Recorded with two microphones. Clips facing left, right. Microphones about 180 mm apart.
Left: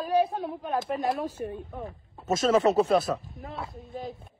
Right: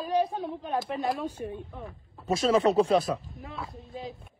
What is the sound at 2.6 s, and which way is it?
Speech, 5° left (ahead or behind).